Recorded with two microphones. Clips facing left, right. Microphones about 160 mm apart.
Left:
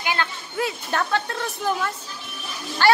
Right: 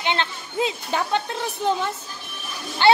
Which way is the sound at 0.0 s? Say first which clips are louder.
Right 1 dB; 25° right (ahead or behind).